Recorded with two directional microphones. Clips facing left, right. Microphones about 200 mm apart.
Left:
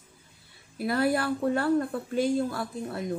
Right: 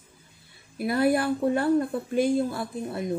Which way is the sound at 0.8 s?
15° right (ahead or behind).